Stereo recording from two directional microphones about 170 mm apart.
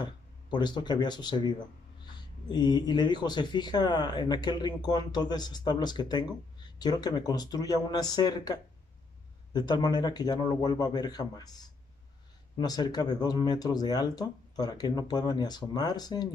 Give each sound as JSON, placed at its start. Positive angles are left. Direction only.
{"t": 0.0, "sound": "speech", "side_deg": 25}